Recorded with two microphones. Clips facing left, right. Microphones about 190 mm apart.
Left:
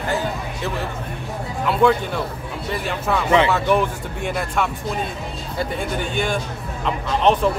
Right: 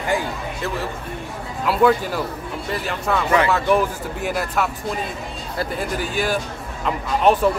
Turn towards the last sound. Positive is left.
turn(degrees=-5)  # may be behind; listen again after turning